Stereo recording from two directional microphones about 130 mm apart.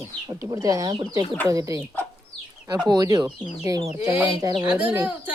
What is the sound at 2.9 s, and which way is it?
Speech, 30° right (ahead or behind).